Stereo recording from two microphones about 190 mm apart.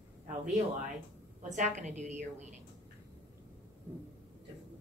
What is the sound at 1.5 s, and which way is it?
A woman's voice, 40° right (ahead or behind).